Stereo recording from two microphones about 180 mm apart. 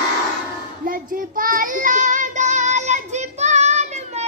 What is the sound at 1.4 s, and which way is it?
Child singing, 50° right (ahead or behind).